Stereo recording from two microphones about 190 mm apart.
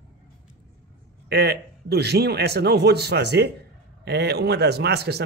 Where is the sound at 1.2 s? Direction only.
55° right (ahead or behind).